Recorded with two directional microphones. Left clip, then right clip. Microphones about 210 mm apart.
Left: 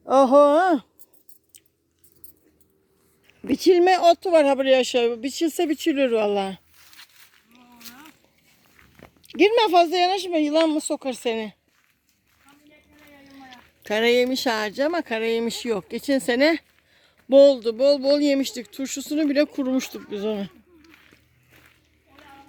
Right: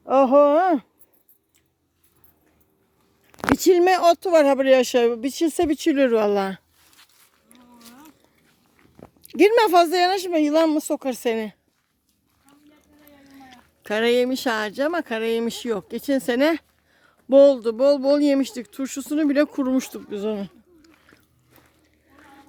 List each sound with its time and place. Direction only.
0.0 s speech: 5° right (ahead or behind)
3.2 s speech: 10° right (ahead or behind)
9.3 s speech: 20° right (ahead or behind)
13.1 s speech: 10° right (ahead or behind)
20.1 s a sound: 5° right (ahead or behind)